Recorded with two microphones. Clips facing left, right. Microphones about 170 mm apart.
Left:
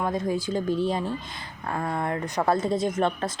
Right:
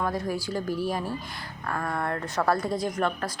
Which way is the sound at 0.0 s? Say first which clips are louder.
Left 2 dB; 20° left (ahead or behind).